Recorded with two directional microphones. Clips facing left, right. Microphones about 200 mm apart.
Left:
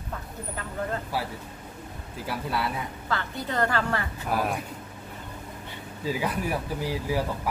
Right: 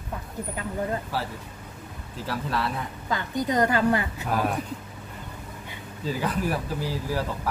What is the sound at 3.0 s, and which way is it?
A woman's voice, 15° right (ahead or behind).